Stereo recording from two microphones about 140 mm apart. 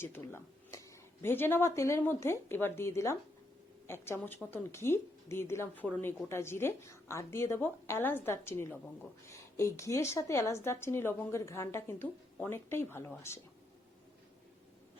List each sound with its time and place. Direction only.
0.0 s a woman's voice: 15° left (ahead or behind)